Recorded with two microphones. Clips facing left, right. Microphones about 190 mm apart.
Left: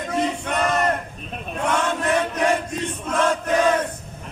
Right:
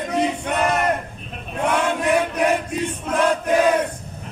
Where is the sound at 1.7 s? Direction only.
10° right (ahead or behind).